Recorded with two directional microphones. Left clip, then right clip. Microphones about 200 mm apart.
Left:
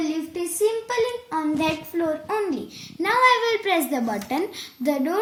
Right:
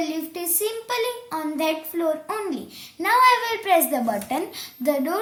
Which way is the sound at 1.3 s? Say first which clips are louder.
Left 1 dB; 25° right (ahead or behind).